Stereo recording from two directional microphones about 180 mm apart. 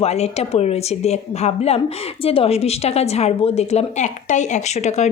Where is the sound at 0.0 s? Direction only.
35° left (ahead or behind).